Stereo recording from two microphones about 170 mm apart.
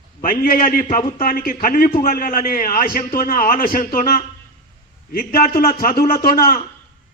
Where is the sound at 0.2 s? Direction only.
55° left (ahead or behind).